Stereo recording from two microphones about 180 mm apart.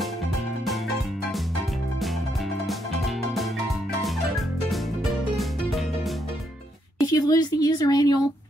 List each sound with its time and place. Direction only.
5.3 s music: centre (ahead or behind)
7.0 s speech: 20° left (ahead or behind)